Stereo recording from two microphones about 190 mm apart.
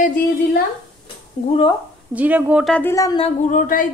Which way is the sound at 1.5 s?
30° left (ahead or behind).